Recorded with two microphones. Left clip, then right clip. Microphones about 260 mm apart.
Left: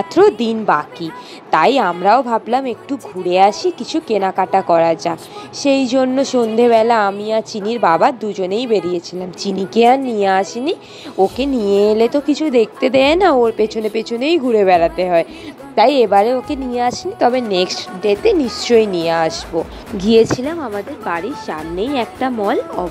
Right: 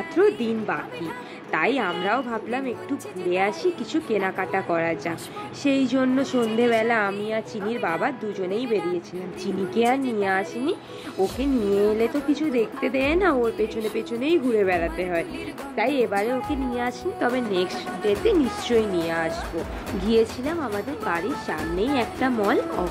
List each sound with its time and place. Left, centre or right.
0.1 s speech: centre